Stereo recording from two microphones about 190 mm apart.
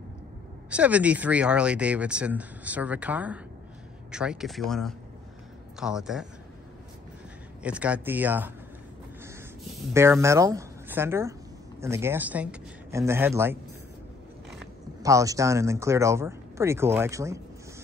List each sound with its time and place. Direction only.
0.7 s speech: 5° right (ahead or behind)
7.6 s speech: 5° right (ahead or behind)
9.9 s speech: 15° right (ahead or behind)
15.0 s speech: 15° right (ahead or behind)